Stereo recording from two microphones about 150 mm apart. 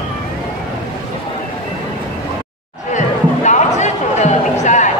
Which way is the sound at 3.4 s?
50° left (ahead or behind).